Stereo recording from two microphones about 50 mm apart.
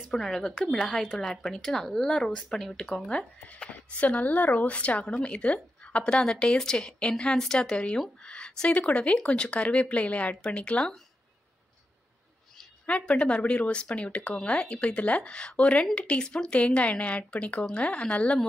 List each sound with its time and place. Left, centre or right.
0.1 s speech: centre
3.1 s speech: left
12.8 s speech: left